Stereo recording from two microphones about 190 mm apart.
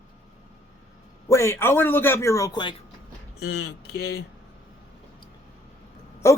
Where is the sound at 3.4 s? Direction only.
60° left (ahead or behind).